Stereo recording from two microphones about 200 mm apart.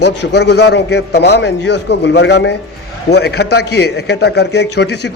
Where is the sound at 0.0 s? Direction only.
55° left (ahead or behind).